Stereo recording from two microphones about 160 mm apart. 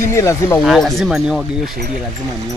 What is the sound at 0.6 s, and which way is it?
Speech, centre (ahead or behind).